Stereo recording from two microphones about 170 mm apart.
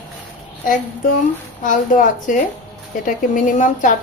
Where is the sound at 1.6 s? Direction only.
50° left (ahead or behind).